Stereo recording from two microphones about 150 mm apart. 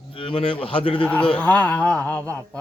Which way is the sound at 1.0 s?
5° left (ahead or behind).